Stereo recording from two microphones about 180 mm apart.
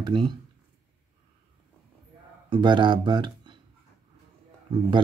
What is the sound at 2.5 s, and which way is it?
Speech, 25° right (ahead or behind).